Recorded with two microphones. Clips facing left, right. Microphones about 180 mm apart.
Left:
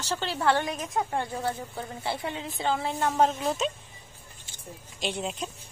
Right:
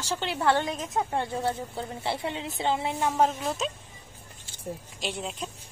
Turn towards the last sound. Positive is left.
turn(degrees=0)  # may be behind; listen again after turning